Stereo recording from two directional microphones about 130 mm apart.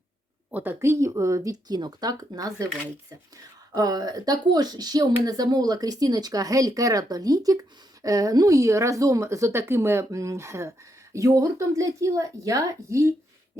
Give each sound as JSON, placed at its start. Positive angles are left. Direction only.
{"t": 0.5, "sound": "speech", "side_deg": -15}
{"t": 3.8, "sound": "speech", "side_deg": -30}